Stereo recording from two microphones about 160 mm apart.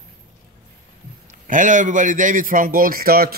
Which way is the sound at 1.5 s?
55° right (ahead or behind).